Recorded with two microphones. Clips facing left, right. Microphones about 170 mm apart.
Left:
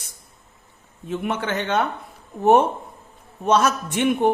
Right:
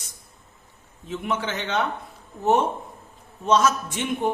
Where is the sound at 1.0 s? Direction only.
55° left (ahead or behind).